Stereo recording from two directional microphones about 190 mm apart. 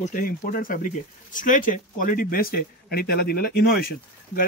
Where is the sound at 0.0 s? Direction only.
45° left (ahead or behind).